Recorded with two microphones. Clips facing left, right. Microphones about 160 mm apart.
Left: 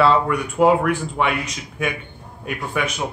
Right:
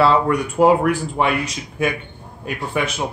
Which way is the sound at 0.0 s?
35° right (ahead or behind).